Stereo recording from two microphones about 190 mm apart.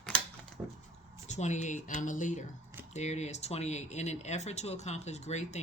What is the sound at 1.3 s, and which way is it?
Speech, 40° left (ahead or behind).